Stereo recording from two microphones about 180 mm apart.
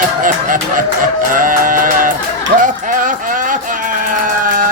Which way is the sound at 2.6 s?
45° right (ahead or behind).